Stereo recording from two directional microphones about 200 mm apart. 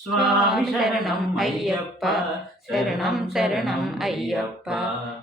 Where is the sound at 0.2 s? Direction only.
Centre (ahead or behind).